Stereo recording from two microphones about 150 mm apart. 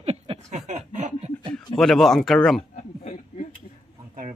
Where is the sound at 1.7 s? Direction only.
Centre (ahead or behind).